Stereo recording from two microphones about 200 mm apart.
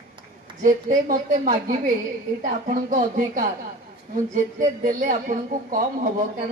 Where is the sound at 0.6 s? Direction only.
40° right (ahead or behind).